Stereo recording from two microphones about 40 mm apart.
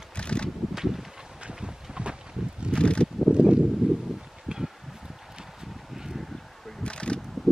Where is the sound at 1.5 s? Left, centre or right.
Right.